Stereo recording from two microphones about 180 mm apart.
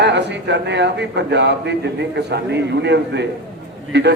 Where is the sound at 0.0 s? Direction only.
75° right (ahead or behind).